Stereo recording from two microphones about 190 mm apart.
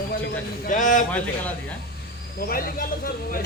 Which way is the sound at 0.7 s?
45° left (ahead or behind).